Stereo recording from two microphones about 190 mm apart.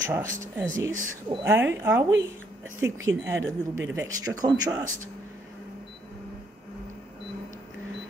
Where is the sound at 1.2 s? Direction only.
10° right (ahead or behind).